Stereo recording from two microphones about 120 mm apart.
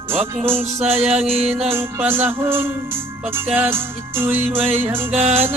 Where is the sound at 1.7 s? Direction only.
20° right (ahead or behind).